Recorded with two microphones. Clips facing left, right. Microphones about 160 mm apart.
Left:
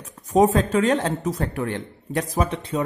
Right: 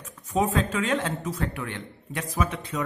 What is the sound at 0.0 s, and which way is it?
Speech, 35° left (ahead or behind).